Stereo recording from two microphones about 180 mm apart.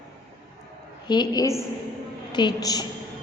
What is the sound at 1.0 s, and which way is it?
A woman's voice, 25° left (ahead or behind).